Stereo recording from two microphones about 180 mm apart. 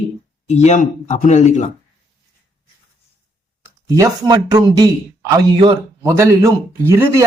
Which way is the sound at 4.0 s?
20° right (ahead or behind).